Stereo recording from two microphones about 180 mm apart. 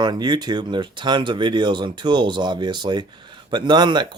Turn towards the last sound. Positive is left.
turn(degrees=-25)  # may be behind; listen again after turning